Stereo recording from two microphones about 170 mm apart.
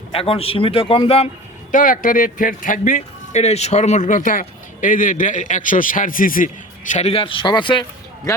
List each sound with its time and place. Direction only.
0.1 s speech: 35° left (ahead or behind)
1.7 s speech: 50° left (ahead or behind); by 8.4 s 25° left (ahead or behind)